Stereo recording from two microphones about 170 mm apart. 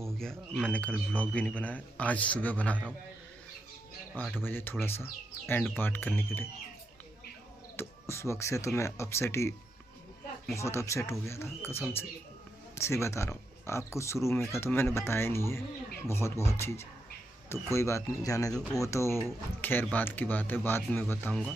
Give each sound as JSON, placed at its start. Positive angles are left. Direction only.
{"t": 0.2, "sound": "a man's voice", "side_deg": 5}
{"t": 4.2, "sound": "a man's voice", "side_deg": 10}
{"t": 7.7, "sound": "a man's voice", "side_deg": 15}
{"t": 10.5, "sound": "a man's voice", "side_deg": 15}